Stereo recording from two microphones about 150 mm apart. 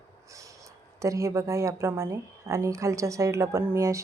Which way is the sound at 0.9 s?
20° right (ahead or behind).